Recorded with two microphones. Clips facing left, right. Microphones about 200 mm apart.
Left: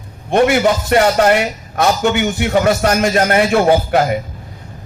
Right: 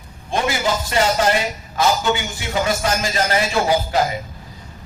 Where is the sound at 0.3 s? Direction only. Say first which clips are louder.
Left 9 dB; 60° left (ahead or behind).